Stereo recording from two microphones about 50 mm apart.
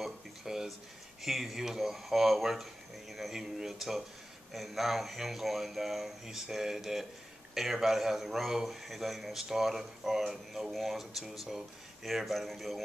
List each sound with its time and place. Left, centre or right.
0.0 s a man's voice: centre